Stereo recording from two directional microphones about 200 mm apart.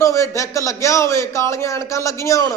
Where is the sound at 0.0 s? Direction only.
15° left (ahead or behind).